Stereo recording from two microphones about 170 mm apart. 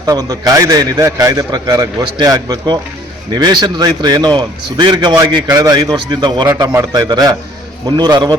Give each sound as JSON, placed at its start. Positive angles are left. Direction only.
{"t": 0.0, "sound": "a man's voice", "side_deg": -20}